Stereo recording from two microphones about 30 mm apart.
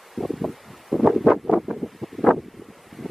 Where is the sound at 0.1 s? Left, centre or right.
Centre.